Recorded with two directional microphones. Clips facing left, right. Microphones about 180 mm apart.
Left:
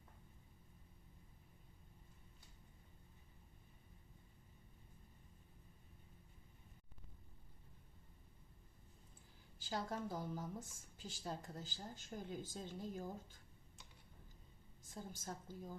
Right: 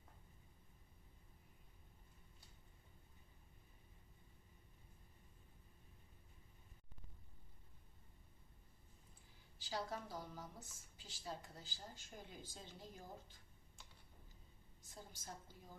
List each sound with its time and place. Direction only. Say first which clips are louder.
9.6 s a woman's voice: left 2 dB; 45° left (ahead or behind)
14.8 s a woman's voice: left 7 dB; 50° left (ahead or behind)